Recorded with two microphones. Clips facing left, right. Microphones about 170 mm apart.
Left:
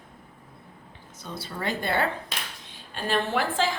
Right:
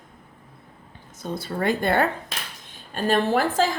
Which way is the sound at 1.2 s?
50° right (ahead or behind).